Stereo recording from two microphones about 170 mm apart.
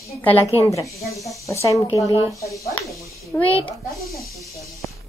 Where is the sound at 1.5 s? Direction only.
15° left (ahead or behind).